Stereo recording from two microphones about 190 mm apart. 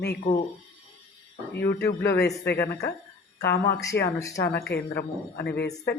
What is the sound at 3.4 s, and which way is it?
Speech, 60° left (ahead or behind).